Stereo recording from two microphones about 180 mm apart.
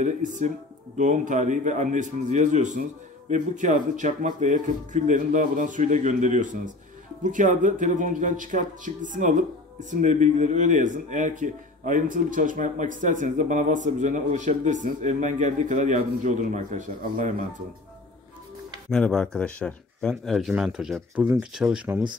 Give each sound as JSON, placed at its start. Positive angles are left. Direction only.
{"t": 0.0, "sound": "speech", "side_deg": -45}
{"t": 18.9, "sound": "speech", "side_deg": 5}